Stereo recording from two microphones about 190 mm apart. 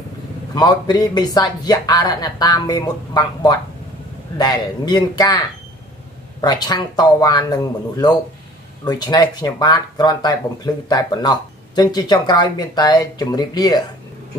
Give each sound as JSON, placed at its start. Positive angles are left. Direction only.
{"t": 0.6, "sound": "speech", "side_deg": 20}
{"t": 6.4, "sound": "speech", "side_deg": 20}